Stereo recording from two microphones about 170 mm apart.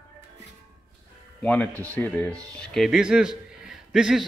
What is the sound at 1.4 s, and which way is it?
A man's voice, 10° left (ahead or behind).